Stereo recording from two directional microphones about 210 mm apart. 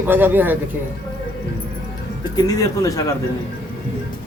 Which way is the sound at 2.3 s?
15° left (ahead or behind).